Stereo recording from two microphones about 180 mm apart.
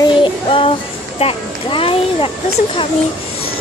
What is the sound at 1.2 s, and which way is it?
A child's voice, 30° left (ahead or behind).